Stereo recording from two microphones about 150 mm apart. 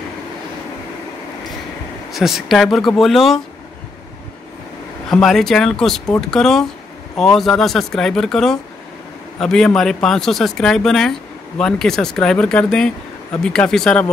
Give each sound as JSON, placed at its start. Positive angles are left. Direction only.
{"t": 2.1, "sound": "speech", "side_deg": 0}
{"t": 5.1, "sound": "speech", "side_deg": 5}